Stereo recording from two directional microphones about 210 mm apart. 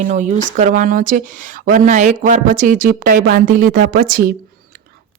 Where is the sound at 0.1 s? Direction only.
35° right (ahead or behind).